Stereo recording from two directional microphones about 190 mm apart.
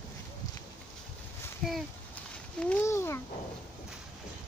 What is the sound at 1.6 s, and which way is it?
Speech, centre (ahead or behind).